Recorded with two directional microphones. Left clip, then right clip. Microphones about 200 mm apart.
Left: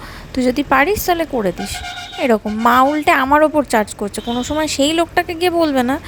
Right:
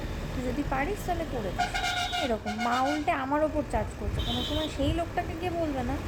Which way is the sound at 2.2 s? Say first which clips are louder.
Left 15 dB; 50° left (ahead or behind).